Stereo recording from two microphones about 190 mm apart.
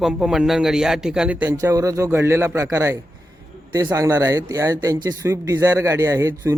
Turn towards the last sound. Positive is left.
turn(degrees=-15)  # may be behind; listen again after turning